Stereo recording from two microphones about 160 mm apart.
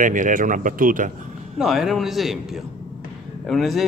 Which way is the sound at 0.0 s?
55° right (ahead or behind).